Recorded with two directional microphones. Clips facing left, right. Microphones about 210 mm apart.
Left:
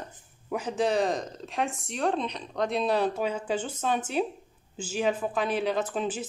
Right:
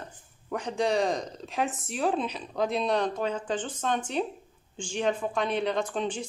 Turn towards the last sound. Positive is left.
turn(degrees=5)  # may be behind; listen again after turning